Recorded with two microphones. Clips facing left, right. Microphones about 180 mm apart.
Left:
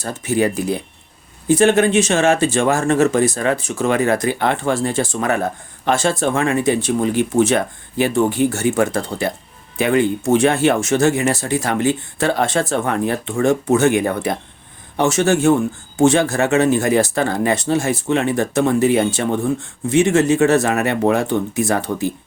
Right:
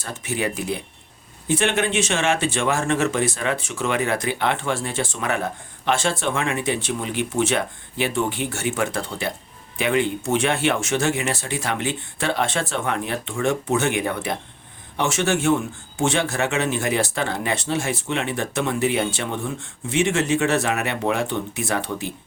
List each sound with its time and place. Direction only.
0.0 s speech: 35° left (ahead or behind)